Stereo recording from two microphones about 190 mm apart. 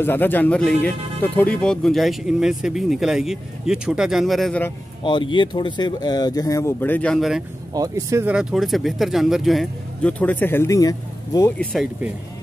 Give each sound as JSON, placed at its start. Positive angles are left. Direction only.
{"t": 0.0, "sound": "speech", "side_deg": 10}
{"t": 5.0, "sound": "speech", "side_deg": 25}
{"t": 7.7, "sound": "speech", "side_deg": -15}
{"t": 11.5, "sound": "speech", "side_deg": 5}